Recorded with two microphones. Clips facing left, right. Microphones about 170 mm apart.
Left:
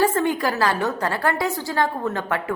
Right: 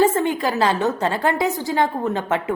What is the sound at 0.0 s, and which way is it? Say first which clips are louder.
A woman's voice: right 2 dB; 20° right (ahead or behind).